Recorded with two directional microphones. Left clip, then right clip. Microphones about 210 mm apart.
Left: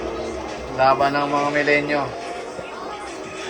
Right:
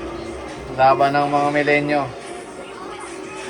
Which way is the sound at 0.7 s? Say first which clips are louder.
Right 2 dB; 10° left (ahead or behind).